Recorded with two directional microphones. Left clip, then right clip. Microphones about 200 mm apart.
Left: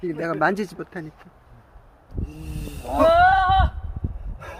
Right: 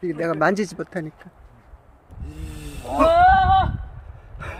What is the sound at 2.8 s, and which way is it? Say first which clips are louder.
Wild animals: even; 10° right (ahead or behind).